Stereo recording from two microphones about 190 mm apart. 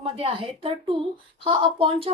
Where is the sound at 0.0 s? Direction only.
30° right (ahead or behind).